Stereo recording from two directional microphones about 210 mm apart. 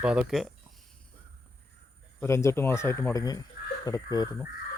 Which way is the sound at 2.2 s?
15° left (ahead or behind).